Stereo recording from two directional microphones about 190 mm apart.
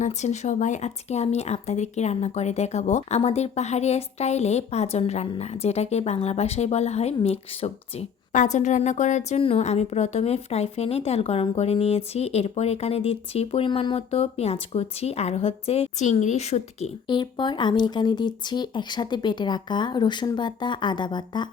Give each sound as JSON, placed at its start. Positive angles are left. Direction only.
{"t": 0.0, "sound": "speech", "side_deg": 35}
{"t": 17.1, "sound": "speech", "side_deg": 25}